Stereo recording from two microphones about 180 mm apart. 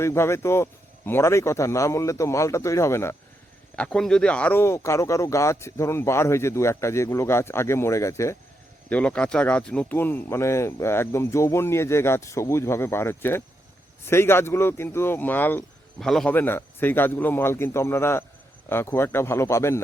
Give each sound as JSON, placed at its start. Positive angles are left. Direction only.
{"t": 0.0, "sound": "speech", "side_deg": 15}
{"t": 3.8, "sound": "speech", "side_deg": 5}